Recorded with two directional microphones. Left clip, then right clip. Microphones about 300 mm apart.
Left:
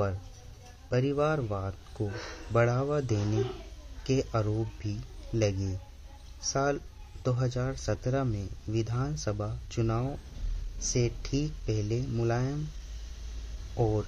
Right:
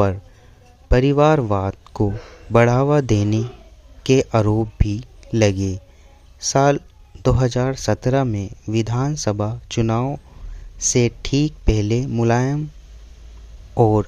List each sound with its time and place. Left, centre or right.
0.8 s speech: right
13.7 s speech: right